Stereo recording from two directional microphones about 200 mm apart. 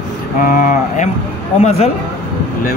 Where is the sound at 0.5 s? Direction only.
40° left (ahead or behind).